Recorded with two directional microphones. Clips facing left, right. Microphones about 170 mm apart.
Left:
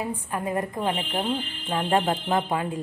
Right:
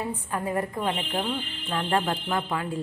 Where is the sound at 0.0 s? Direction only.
15° left (ahead or behind).